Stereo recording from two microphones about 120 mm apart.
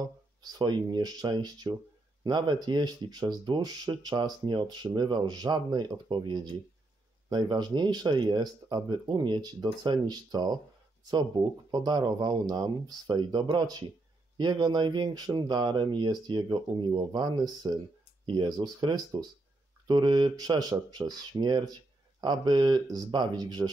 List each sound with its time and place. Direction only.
0.0 s speech: 35° right (ahead or behind)